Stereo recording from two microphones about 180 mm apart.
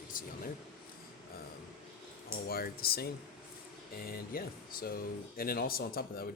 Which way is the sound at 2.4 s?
55° left (ahead or behind).